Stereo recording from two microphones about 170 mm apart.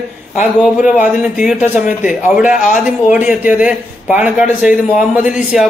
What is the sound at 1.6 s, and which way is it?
Speech, 50° left (ahead or behind).